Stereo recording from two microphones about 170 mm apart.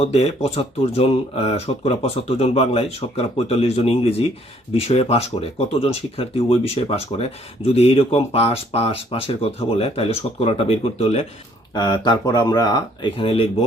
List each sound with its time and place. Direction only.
0.0 s speech: 40° left (ahead or behind)
11.7 s speech: 25° left (ahead or behind)